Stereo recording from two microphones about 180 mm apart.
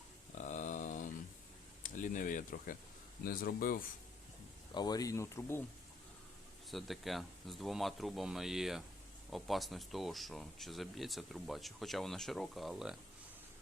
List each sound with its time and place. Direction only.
0.3 s a sound: 40° left (ahead or behind)
1.8 s speech: 45° left (ahead or behind)
4.7 s speech: 20° left (ahead or behind)
6.7 s speech: centre (ahead or behind)